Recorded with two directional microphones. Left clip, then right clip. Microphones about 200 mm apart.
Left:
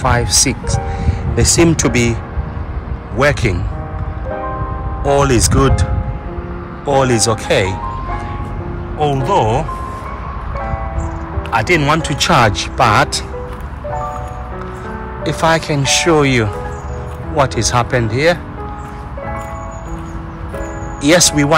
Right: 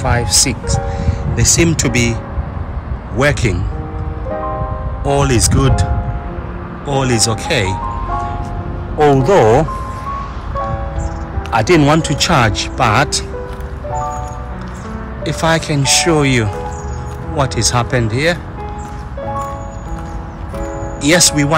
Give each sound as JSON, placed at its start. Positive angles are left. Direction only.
{"t": 0.0, "sound": "speech", "side_deg": -5}
{"t": 3.2, "sound": "speech", "side_deg": -10}
{"t": 5.0, "sound": "speech", "side_deg": -10}
{"t": 6.9, "sound": "speech", "side_deg": -5}
{"t": 9.0, "sound": "speech", "side_deg": -25}
{"t": 11.5, "sound": "speech", "side_deg": -20}
{"t": 15.2, "sound": "speech", "side_deg": -10}
{"t": 21.0, "sound": "speech", "side_deg": -10}